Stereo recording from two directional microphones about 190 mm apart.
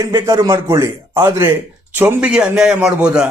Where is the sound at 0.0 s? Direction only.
15° right (ahead or behind).